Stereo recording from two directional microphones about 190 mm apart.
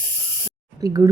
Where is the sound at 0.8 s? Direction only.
20° right (ahead or behind).